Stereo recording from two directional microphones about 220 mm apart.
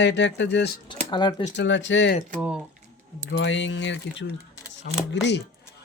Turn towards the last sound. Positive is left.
turn(degrees=50)  # may be behind; listen again after turning